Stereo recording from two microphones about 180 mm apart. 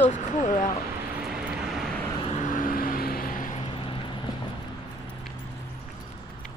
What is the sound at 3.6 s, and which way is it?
Vehicle, 30° left (ahead or behind).